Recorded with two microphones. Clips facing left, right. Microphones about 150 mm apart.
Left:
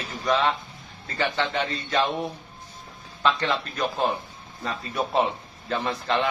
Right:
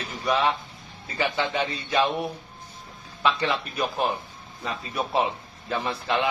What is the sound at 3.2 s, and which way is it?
Speech, 10° right (ahead or behind).